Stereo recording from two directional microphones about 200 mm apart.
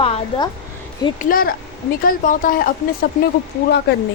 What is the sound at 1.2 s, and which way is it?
Speech, 45° left (ahead or behind).